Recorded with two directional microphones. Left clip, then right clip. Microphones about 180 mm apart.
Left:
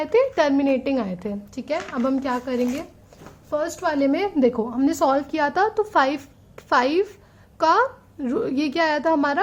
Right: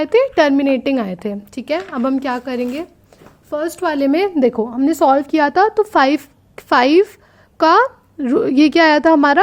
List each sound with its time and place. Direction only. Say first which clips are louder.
0.0 s a woman's voice: right 6 dB; 40° right (ahead or behind)